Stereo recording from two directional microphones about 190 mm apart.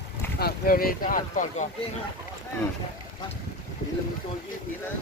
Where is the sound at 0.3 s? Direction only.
50° left (ahead or behind).